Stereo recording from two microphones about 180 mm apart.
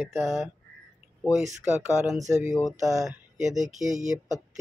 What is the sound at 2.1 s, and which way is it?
Speech, 15° right (ahead or behind).